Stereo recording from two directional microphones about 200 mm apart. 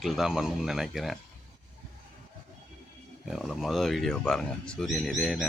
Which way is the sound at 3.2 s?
Centre (ahead or behind).